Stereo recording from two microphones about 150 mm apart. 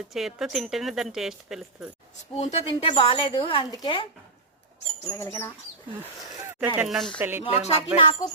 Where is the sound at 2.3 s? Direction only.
45° left (ahead or behind).